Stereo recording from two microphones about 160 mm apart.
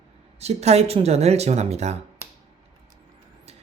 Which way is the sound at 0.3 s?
40° right (ahead or behind).